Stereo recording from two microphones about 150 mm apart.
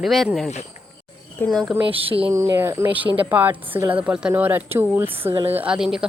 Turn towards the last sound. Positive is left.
turn(degrees=-5)  # may be behind; listen again after turning